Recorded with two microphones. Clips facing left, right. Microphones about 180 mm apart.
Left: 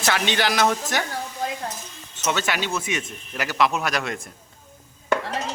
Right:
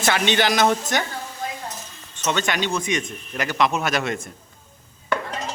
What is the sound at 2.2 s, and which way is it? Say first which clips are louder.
Speech: right 2 dB; 5° left (ahead or behind).